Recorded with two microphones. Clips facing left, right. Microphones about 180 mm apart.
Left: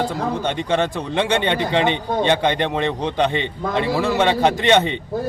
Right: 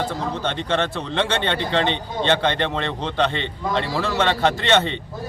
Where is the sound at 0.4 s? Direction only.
15° left (ahead or behind).